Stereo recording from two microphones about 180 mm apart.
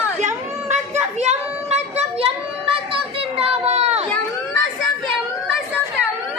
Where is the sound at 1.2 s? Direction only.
35° right (ahead or behind).